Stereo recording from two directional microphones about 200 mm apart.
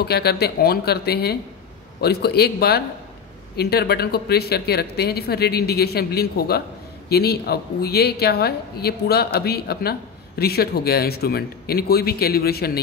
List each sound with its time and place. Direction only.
0.0 s speech: 55° left (ahead or behind)